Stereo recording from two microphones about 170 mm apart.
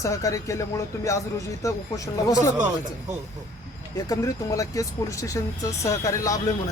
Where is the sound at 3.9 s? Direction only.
20° left (ahead or behind).